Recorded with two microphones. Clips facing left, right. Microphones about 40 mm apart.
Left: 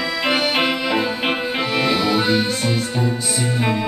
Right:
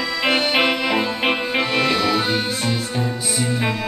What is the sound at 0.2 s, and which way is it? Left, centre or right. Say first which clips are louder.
Music: right 1 dB; centre.